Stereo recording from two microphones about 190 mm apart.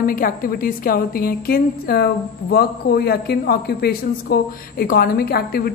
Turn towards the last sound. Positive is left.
turn(degrees=55)  # may be behind; listen again after turning